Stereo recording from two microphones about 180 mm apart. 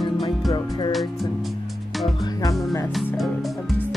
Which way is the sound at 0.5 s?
25° left (ahead or behind).